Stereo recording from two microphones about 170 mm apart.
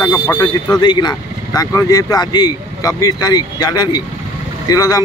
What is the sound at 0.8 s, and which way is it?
Speech, 25° left (ahead or behind).